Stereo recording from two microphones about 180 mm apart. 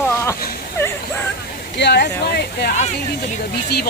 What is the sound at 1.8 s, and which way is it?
Speech, 70° left (ahead or behind).